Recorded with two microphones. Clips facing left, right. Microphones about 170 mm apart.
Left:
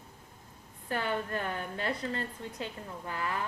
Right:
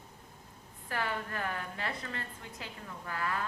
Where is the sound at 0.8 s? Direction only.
25° left (ahead or behind).